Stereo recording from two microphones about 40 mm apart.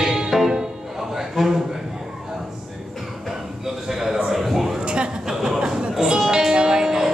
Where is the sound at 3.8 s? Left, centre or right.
Centre.